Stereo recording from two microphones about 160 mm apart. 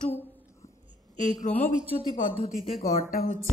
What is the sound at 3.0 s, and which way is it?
Speech, 60° left (ahead or behind).